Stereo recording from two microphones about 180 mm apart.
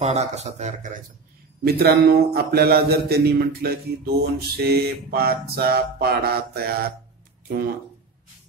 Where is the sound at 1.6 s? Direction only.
60° right (ahead or behind).